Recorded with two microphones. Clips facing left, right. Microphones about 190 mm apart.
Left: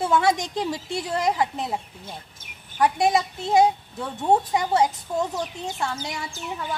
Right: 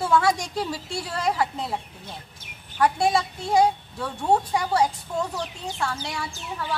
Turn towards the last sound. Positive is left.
turn(degrees=20)  # may be behind; listen again after turning